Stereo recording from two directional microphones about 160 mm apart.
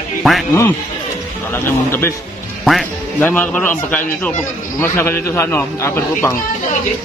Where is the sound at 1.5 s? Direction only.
15° left (ahead or behind).